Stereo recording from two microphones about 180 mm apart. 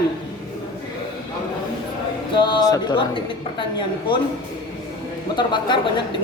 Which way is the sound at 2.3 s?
25° left (ahead or behind).